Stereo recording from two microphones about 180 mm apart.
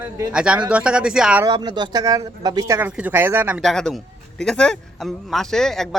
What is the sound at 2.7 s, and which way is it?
Speech, 10° right (ahead or behind).